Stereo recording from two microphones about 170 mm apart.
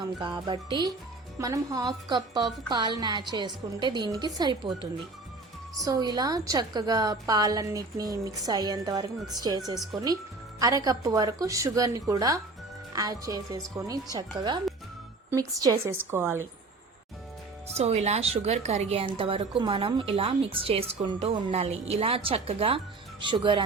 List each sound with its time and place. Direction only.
0.2 s a woman's voice: 25° right (ahead or behind)
5.8 s a woman's voice: 25° right (ahead or behind)
17.7 s a woman's voice: 40° right (ahead or behind)